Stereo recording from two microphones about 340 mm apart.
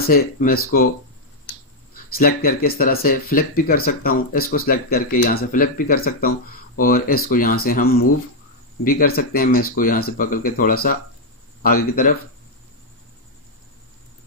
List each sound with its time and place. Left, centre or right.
0.0 s speech: left
2.1 s speech: left